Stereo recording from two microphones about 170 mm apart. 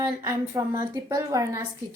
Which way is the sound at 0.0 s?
15° right (ahead or behind).